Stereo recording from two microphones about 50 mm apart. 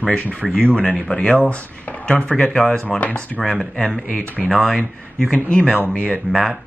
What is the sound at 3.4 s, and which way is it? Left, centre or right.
Speech, centre.